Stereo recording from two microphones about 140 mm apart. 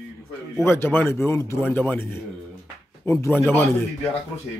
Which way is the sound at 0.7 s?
15° left (ahead or behind).